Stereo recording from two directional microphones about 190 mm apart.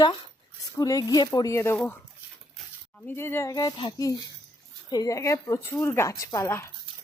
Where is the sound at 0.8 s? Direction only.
20° left (ahead or behind).